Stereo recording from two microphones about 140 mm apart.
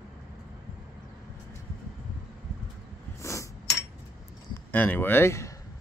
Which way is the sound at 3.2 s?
20° left (ahead or behind).